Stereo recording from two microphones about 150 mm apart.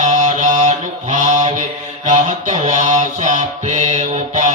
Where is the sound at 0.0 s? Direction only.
55° right (ahead or behind).